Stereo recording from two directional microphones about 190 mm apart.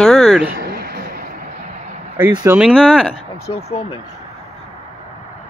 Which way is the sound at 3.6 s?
35° left (ahead or behind).